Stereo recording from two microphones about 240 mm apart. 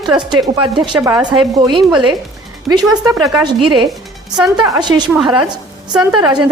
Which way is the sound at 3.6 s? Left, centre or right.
Centre.